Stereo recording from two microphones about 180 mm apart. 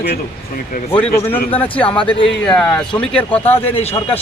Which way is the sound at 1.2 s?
10° left (ahead or behind).